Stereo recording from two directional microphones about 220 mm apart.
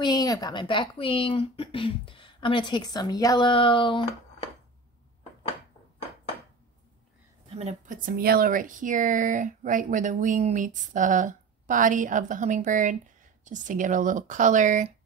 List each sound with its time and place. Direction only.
0.0 s speech: 15° left (ahead or behind)
7.4 s speech: 30° right (ahead or behind)